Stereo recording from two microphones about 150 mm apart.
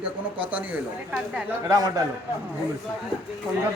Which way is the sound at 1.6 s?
20° right (ahead or behind).